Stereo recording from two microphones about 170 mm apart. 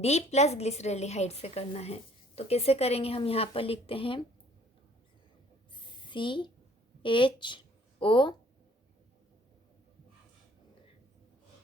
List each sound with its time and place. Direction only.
0.0 s a woman's voice: 40° left (ahead or behind)
6.1 s a woman's voice: 30° left (ahead or behind)